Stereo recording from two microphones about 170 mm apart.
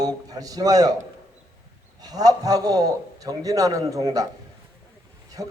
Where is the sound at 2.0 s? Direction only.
20° right (ahead or behind).